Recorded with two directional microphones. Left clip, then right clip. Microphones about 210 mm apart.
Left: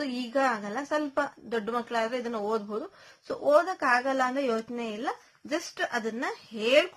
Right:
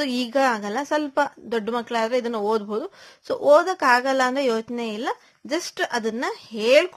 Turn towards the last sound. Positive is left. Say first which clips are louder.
# right 6 dB
turn(degrees=-35)  # may be behind; listen again after turning